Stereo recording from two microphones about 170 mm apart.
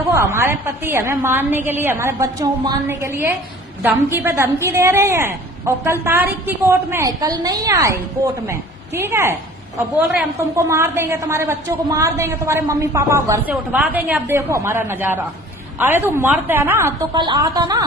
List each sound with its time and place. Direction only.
0.1 s a woman's voice: 15° right (ahead or behind)
10.6 s a woman's voice: 15° right (ahead or behind)
17.2 s a woman's voice: 25° right (ahead or behind)